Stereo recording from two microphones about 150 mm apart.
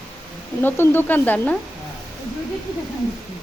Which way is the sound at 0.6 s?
15° left (ahead or behind).